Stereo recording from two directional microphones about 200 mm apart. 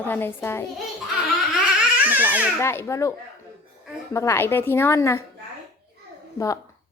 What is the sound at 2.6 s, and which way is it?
Speech, 15° left (ahead or behind).